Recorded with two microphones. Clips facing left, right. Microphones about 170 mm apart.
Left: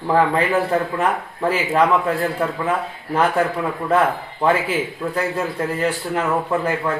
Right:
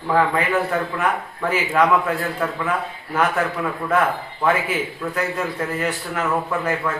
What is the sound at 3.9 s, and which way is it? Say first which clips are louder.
Speech: left 2 dB; 30° left (ahead or behind).